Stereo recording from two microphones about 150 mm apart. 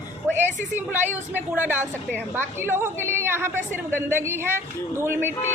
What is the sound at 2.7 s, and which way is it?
A woman's voice, 15° right (ahead or behind).